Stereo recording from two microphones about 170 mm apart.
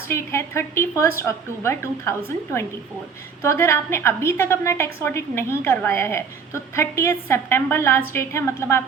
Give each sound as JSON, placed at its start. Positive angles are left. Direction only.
{"t": 0.1, "sound": "a woman's voice", "side_deg": 15}